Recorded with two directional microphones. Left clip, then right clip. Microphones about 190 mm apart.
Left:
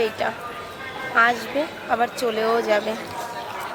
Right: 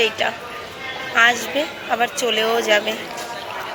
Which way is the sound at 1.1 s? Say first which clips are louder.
Right 3 dB; 15° left (ahead or behind).